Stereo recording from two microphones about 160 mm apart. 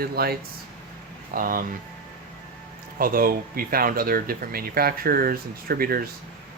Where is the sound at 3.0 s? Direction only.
65° right (ahead or behind).